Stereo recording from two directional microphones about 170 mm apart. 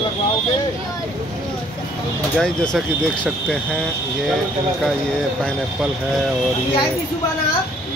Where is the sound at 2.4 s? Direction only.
5° left (ahead or behind).